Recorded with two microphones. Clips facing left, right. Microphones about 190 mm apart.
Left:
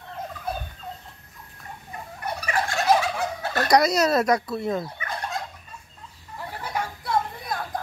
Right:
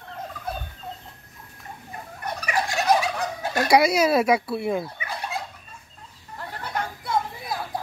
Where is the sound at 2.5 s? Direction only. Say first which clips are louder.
Right 1 dB; 10° right (ahead or behind).